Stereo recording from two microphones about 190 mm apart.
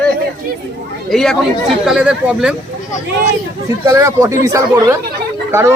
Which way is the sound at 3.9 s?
15° right (ahead or behind).